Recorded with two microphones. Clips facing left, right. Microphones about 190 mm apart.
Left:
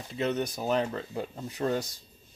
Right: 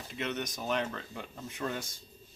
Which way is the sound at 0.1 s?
35° left (ahead or behind).